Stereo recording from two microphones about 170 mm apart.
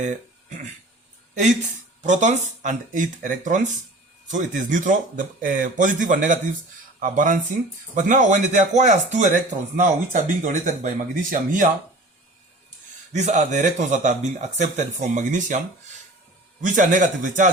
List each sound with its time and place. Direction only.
2.0 s speech: 45° right (ahead or behind)
13.1 s speech: 45° right (ahead or behind)